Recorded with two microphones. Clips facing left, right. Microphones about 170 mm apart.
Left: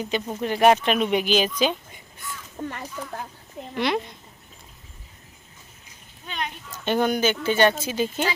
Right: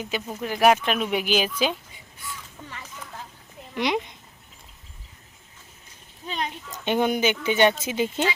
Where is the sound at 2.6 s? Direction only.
45° left (ahead or behind).